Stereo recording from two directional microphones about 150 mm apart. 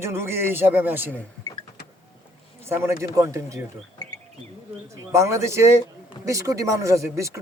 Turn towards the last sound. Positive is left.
turn(degrees=-20)  # may be behind; listen again after turning